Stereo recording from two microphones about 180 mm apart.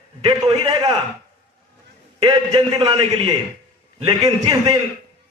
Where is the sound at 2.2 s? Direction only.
25° right (ahead or behind).